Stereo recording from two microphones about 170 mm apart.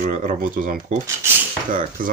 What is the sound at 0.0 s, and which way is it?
Speech, 50° right (ahead or behind).